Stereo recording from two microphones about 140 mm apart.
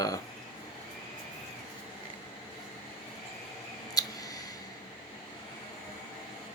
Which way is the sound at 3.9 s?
25° left (ahead or behind).